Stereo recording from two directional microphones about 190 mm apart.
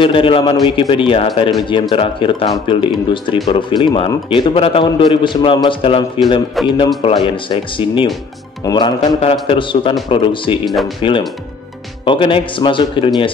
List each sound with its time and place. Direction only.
0.0 s speech: 30° left (ahead or behind)
10.6 s speech: centre (ahead or behind)
11.0 s speech: 25° left (ahead or behind)